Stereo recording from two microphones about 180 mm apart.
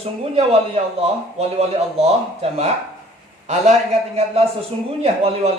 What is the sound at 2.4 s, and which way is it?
A man's voice, 35° right (ahead or behind).